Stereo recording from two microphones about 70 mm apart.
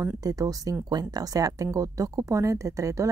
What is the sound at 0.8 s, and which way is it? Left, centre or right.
A woman's voice, right.